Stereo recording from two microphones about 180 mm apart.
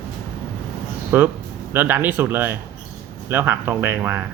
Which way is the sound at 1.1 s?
10° right (ahead or behind).